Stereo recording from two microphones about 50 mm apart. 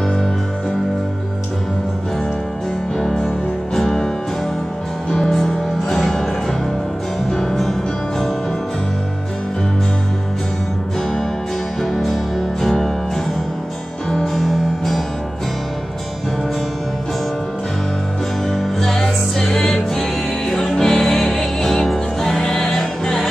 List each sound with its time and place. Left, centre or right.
3.0 s music: centre
5.3 s music: centre
7.2 s music: centre
11.8 s music: centre
14.3 s music: centre
18.5 s music: centre